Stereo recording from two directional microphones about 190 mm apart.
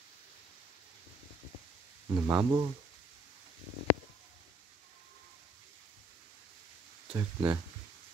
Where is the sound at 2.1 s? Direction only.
20° right (ahead or behind).